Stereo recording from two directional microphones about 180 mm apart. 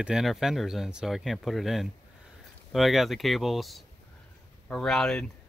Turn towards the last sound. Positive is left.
turn(degrees=0)  # may be behind; listen again after turning